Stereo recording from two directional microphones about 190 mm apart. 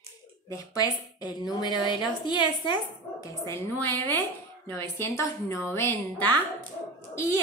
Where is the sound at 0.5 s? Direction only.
20° left (ahead or behind).